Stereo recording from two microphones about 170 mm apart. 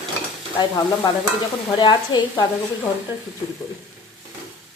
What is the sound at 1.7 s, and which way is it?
Speech, 25° left (ahead or behind).